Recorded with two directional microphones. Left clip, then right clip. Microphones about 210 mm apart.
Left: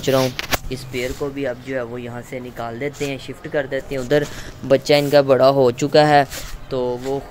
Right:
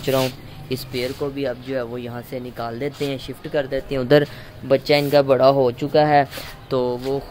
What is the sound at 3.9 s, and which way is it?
Speech, 25° right (ahead or behind).